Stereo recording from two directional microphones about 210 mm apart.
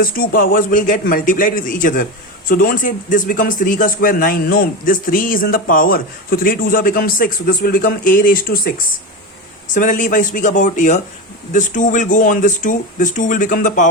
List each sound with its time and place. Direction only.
0.0 s speech: 40° left (ahead or behind)
9.7 s speech: 40° left (ahead or behind)